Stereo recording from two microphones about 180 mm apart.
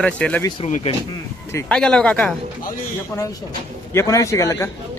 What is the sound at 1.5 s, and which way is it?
Speech, 5° left (ahead or behind).